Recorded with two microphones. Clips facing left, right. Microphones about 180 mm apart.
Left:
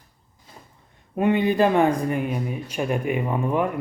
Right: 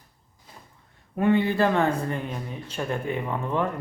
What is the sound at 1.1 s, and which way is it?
Speech, 15° left (ahead or behind).